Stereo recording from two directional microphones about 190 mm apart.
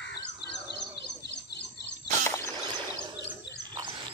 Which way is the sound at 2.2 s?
15° left (ahead or behind).